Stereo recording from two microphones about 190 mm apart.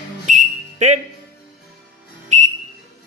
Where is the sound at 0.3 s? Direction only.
35° right (ahead or behind).